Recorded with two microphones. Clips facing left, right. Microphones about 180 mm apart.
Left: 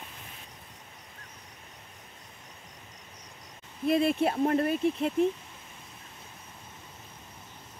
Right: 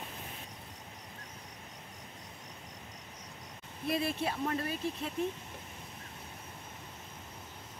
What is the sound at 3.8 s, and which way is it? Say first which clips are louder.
Speech: left 8 dB; 55° left (ahead or behind).